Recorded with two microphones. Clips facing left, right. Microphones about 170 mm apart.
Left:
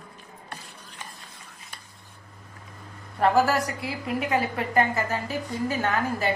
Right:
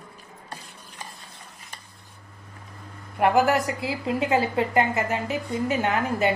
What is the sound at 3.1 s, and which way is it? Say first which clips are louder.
A woman's voice: right 1 dB; 15° right (ahead or behind).